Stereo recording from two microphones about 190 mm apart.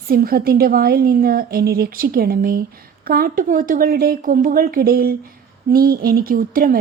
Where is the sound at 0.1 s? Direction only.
50° right (ahead or behind).